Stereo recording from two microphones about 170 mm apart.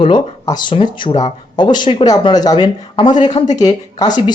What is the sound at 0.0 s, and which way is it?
Speech, 25° left (ahead or behind).